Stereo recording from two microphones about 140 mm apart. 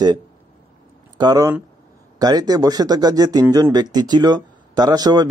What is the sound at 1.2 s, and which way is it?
A man's voice, 25° right (ahead or behind).